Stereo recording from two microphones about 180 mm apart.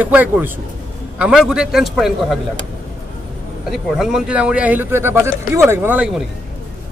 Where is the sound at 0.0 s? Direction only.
10° right (ahead or behind).